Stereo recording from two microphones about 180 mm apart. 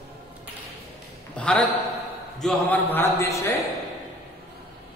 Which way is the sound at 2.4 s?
10° left (ahead or behind).